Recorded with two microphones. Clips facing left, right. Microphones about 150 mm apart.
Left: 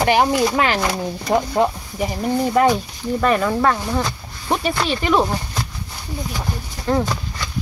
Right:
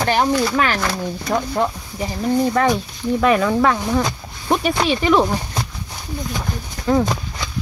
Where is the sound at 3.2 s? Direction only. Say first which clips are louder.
Right 2 dB; centre (ahead or behind).